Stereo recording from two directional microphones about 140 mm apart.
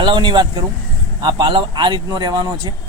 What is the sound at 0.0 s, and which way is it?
A man's voice, 35° right (ahead or behind).